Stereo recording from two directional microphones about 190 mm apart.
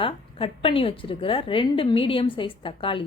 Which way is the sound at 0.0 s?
30° left (ahead or behind).